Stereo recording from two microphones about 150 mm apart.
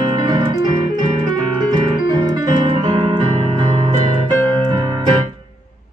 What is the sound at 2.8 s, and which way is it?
Music, 30° right (ahead or behind).